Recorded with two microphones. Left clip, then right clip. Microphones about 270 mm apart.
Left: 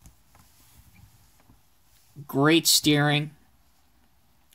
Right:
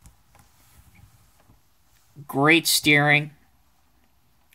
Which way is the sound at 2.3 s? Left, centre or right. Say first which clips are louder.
Right 2 dB; left.